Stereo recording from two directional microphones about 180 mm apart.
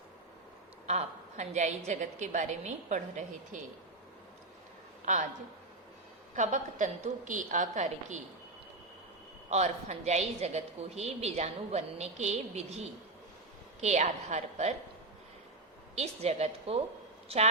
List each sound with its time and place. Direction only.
0.9 s a woman's voice: 40° right (ahead or behind)
5.1 s a woman's voice: 40° right (ahead or behind)
6.3 s a woman's voice: 45° right (ahead or behind)
9.5 s a woman's voice: 35° right (ahead or behind)
16.0 s a woman's voice: 35° right (ahead or behind)